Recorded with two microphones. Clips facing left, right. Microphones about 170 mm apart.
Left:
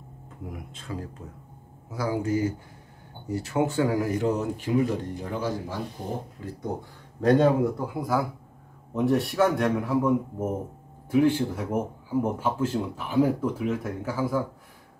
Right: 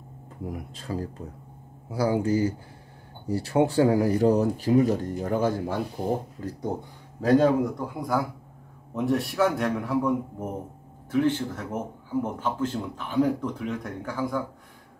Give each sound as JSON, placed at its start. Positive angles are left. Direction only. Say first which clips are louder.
{"t": 0.5, "sound": "speech", "louder": "right 4 dB", "side_deg": -35}
{"t": 6.7, "sound": "speech", "louder": "even", "side_deg": -25}
{"t": 7.2, "sound": "a man's voice", "louder": "even", "side_deg": 0}